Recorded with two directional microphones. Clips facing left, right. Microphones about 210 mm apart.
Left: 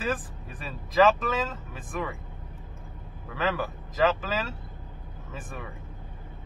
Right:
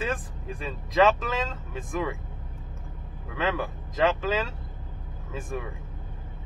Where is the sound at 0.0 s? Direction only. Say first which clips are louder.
Even; 5° left (ahead or behind).